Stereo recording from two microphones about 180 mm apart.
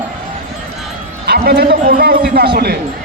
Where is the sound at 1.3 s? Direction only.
60° right (ahead or behind).